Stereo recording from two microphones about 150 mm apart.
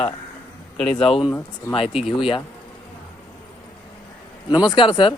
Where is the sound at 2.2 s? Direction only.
35° left (ahead or behind).